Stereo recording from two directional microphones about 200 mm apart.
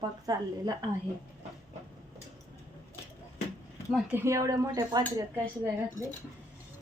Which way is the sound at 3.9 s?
5° right (ahead or behind).